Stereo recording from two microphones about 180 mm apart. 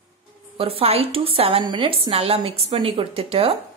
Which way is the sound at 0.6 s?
30° right (ahead or behind).